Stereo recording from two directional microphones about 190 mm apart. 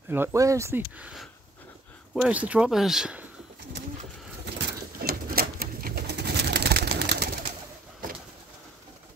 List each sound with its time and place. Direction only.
0.1 s speech: 15° right (ahead or behind)
4.6 s bird: 60° right (ahead or behind)